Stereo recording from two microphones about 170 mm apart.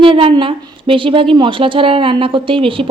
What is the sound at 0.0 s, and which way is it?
A woman's voice, 30° right (ahead or behind).